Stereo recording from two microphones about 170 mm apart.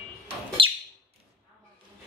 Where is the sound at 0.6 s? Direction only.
30° right (ahead or behind).